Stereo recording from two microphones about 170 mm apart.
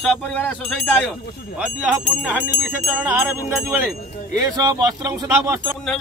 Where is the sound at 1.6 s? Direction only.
5° right (ahead or behind).